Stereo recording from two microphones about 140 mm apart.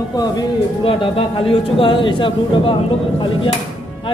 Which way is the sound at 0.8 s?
40° left (ahead or behind).